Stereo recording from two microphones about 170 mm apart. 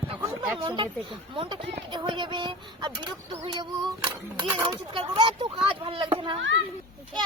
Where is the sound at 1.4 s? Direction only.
30° right (ahead or behind).